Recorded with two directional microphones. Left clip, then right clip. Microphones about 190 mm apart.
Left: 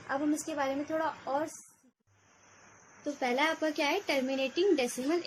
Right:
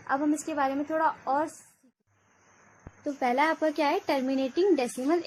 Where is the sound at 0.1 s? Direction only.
35° right (ahead or behind).